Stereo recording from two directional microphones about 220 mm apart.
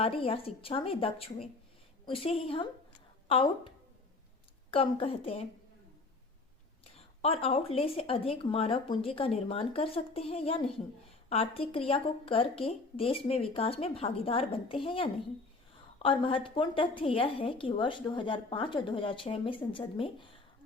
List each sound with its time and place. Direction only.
0.0 s a woman's voice: 25° left (ahead or behind)
4.7 s a woman's voice: 25° left (ahead or behind)
6.9 s a woman's voice: 25° left (ahead or behind)